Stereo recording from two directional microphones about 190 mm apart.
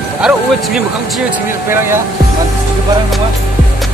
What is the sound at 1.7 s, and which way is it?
Speech, 15° right (ahead or behind).